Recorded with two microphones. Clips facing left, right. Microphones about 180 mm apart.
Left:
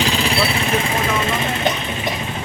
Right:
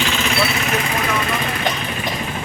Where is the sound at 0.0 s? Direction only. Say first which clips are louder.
Left 1 dB; 35° left (ahead or behind).